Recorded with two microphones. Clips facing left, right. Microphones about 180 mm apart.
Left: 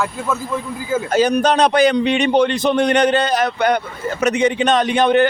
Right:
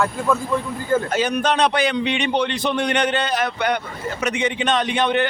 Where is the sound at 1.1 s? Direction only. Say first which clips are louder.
Left 5 dB; 40° left (ahead or behind).